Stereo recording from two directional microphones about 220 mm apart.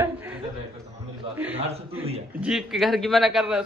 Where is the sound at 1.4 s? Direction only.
10° right (ahead or behind).